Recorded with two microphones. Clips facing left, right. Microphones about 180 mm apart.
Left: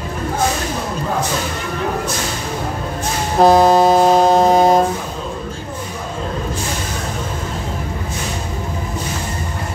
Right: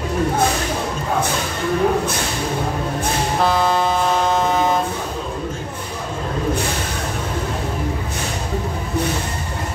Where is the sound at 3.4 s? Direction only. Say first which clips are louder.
Left 9 dB; 40° left (ahead or behind).